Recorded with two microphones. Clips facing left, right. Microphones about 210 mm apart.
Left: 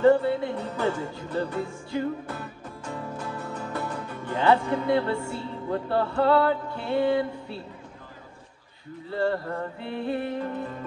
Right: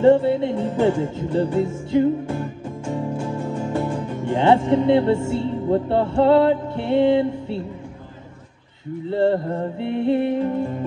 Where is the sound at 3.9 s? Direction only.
25° right (ahead or behind).